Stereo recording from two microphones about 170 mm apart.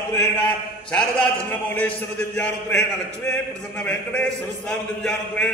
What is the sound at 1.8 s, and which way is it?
A man's voice, 10° left (ahead or behind).